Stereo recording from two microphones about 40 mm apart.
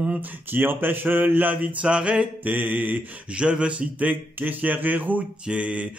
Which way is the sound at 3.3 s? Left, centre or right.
Right.